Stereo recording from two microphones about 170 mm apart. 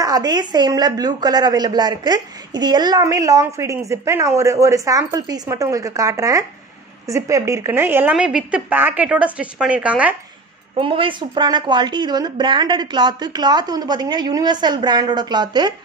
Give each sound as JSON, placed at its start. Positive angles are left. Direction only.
{"t": 0.0, "sound": "a woman's voice", "side_deg": -20}
{"t": 10.8, "sound": "a woman's voice", "side_deg": -30}